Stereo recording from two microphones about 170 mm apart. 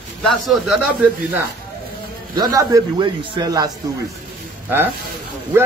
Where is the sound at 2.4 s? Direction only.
25° right (ahead or behind).